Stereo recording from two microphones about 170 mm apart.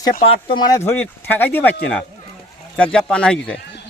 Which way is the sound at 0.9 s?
10° left (ahead or behind).